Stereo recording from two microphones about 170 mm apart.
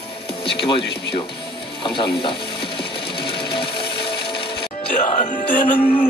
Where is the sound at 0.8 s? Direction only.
85° left.